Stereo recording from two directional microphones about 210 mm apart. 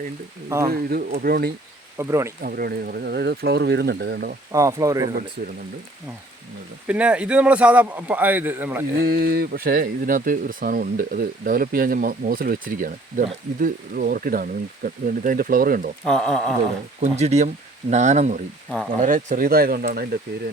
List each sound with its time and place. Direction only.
0.4 s speech: 15° right (ahead or behind)
0.7 s speech: 45° right (ahead or behind)
2.0 s speech: 15° right (ahead or behind)
2.4 s speech: 45° right (ahead or behind)
4.5 s speech: 15° right (ahead or behind)
5.4 s speech: 40° right (ahead or behind)
6.8 s speech: 5° right (ahead or behind)
9.0 s speech: 45° right (ahead or behind)
16.0 s speech: 5° left (ahead or behind)
17.0 s speech: 30° right (ahead or behind)